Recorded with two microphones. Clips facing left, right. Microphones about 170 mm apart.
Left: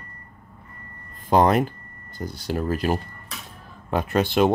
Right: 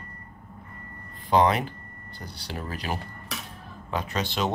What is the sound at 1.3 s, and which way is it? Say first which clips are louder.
Speech: left 4 dB; 45° left (ahead or behind).